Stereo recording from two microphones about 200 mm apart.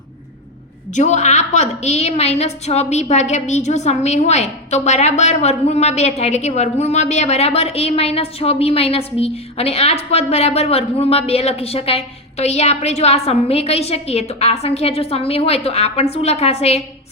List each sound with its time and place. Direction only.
0.9 s a woman's voice: 35° left (ahead or behind)